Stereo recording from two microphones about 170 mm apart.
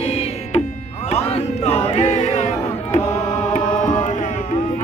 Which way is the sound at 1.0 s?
35° left (ahead or behind).